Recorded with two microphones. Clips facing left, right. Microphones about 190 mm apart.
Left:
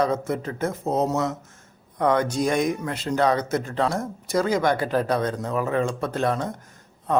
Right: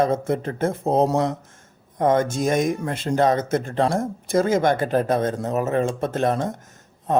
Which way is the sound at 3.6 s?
50° right (ahead or behind).